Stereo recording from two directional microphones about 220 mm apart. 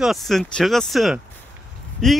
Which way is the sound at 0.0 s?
Centre (ahead or behind).